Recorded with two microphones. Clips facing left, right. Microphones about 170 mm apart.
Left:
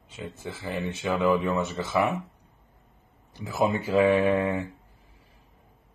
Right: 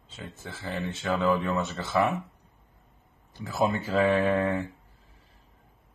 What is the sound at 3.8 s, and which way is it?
Speech, 15° left (ahead or behind).